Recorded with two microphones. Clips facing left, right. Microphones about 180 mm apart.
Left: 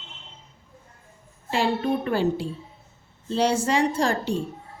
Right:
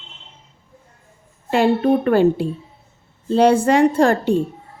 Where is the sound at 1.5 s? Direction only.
55° right (ahead or behind).